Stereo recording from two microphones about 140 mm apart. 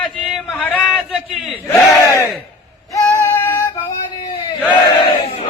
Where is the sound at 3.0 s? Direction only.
15° left (ahead or behind).